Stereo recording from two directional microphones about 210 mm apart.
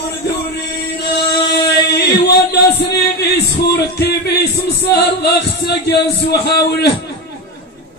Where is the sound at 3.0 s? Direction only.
50° left (ahead or behind).